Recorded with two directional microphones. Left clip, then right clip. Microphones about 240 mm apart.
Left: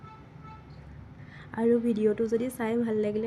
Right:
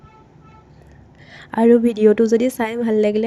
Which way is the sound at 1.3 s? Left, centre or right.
Right.